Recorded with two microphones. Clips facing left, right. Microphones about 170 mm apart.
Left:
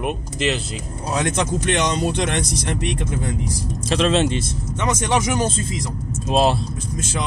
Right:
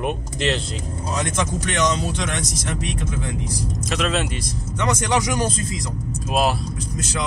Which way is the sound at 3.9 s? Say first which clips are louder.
Left 6 dB; 30° left (ahead or behind).